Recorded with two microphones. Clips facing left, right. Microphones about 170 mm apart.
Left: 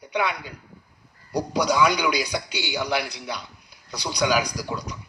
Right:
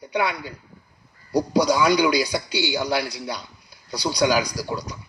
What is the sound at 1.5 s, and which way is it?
Speech, 30° right (ahead or behind).